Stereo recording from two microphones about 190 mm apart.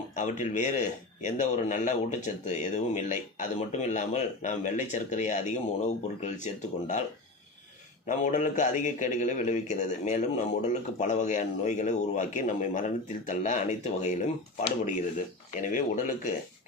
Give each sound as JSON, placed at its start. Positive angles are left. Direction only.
{"t": 0.2, "sound": "speech", "side_deg": 40}
{"t": 8.0, "sound": "speech", "side_deg": 40}
{"t": 15.6, "sound": "speech", "side_deg": 45}